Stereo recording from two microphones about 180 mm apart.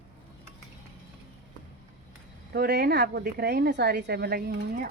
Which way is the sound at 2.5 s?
65° right (ahead or behind).